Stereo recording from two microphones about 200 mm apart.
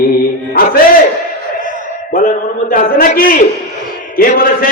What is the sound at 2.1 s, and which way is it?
A man's voice, 45° left (ahead or behind).